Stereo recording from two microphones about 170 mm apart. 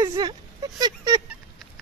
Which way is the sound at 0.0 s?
20° right (ahead or behind).